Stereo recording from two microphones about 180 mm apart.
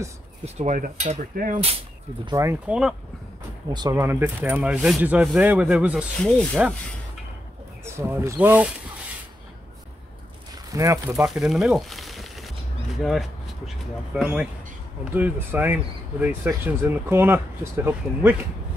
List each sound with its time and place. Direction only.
0.6 s speech: 45° right (ahead or behind)
2.2 s speech: 15° right (ahead or behind)
3.7 s speech: 20° right (ahead or behind)
7.8 s speech: 15° right (ahead or behind)
10.7 s speech: 15° right (ahead or behind)
11.2 s speech: 5° right (ahead or behind)